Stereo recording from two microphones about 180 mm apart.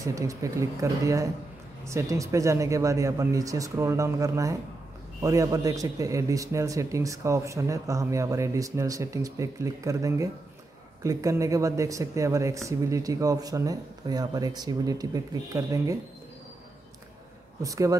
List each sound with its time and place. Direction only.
0.0 s a man's voice: 15° right (ahead or behind)
17.6 s speech: 20° right (ahead or behind)